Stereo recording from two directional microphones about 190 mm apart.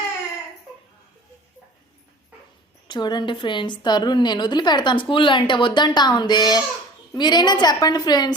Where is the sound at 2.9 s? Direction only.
20° left (ahead or behind).